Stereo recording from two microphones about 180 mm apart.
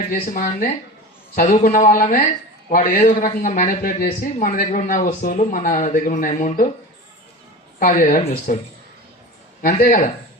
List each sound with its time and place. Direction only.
0.1 s speech: 50° left (ahead or behind)
7.8 s speech: 50° left (ahead or behind)